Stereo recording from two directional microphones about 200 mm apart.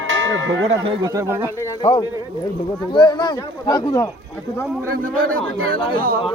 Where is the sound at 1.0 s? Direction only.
15° right (ahead or behind).